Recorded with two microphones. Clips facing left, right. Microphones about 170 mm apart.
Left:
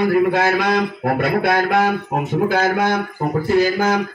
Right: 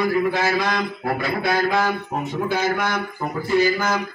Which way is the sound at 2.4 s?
50° left (ahead or behind).